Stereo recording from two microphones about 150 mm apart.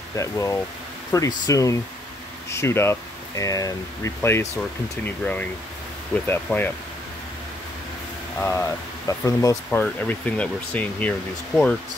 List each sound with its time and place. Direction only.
0.1 s speech: 20° left (ahead or behind)
8.4 s speech: 15° left (ahead or behind)
9.7 s speech: 10° left (ahead or behind)